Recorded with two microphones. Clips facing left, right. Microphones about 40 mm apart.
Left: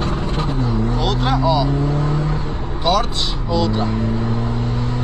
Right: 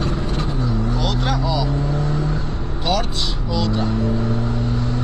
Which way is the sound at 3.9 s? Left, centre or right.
Left.